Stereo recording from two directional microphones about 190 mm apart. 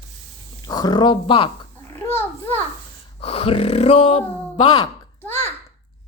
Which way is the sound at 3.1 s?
30° left (ahead or behind).